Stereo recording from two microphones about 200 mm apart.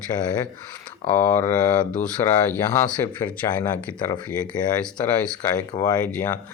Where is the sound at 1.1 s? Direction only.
10° left (ahead or behind).